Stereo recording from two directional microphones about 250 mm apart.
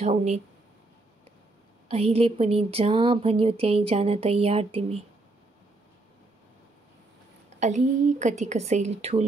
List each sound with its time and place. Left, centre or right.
0.0 s speech: right
1.9 s speech: right
7.4 s speech: right